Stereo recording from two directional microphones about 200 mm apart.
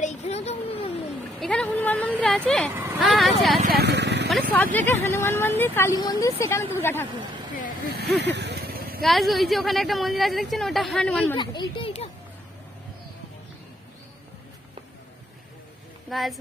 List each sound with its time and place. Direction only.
0.0 s a sound: 35° left (ahead or behind)
1.4 s a woman's voice: 5° left (ahead or behind)
2.7 s speech: 10° right (ahead or behind)
3.7 s vehicle: 55° right (ahead or behind)
4.3 s speech: 10° left (ahead or behind)
7.5 s speech: 45° left (ahead or behind)
8.1 s vehicle: 60° right (ahead or behind)
9.0 s a woman's voice: centre (ahead or behind)
11.3 s speech: 25° left (ahead or behind)
16.1 s speech: centre (ahead or behind)